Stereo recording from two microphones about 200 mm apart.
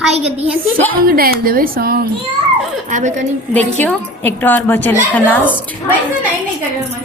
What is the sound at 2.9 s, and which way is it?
Speech, 35° right (ahead or behind).